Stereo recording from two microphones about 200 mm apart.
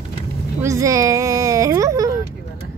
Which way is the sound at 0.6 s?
15° right (ahead or behind).